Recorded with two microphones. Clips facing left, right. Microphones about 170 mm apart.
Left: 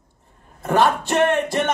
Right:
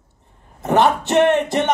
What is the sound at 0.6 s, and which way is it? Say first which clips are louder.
A man's voice: right 2 dB; 20° right (ahead or behind).